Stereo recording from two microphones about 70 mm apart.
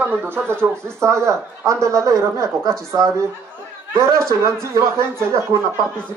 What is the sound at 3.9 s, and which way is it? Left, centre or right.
Speech, right.